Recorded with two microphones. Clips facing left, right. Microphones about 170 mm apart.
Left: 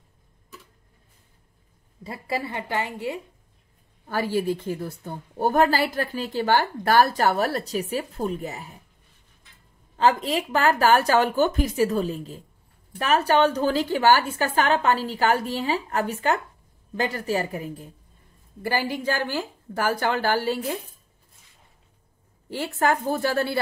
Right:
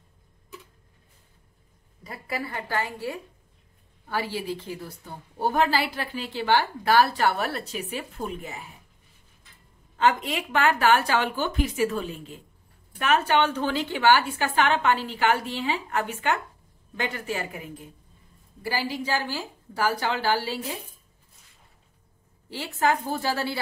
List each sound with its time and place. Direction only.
2.0 s a woman's voice: 25° left (ahead or behind)
4.1 s a woman's voice: 45° left (ahead or behind)
9.9 s a woman's voice: 35° left (ahead or behind)
18.6 s a woman's voice: 50° left (ahead or behind)
22.5 s a woman's voice: 50° left (ahead or behind)